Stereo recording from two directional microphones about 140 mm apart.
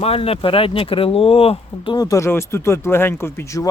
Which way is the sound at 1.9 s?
25° left (ahead or behind).